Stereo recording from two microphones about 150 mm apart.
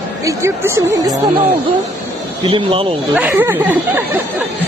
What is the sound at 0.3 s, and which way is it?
Speech, 20° right (ahead or behind).